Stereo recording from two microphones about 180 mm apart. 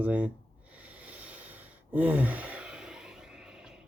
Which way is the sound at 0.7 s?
10° right (ahead or behind).